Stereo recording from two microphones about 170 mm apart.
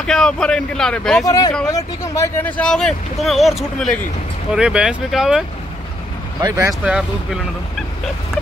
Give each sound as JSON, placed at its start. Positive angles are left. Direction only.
{"t": 0.0, "sound": "speech", "side_deg": 5}
{"t": 1.2, "sound": "speech", "side_deg": 20}
{"t": 6.4, "sound": "speech", "side_deg": -20}
{"t": 6.7, "sound": "speech", "side_deg": -5}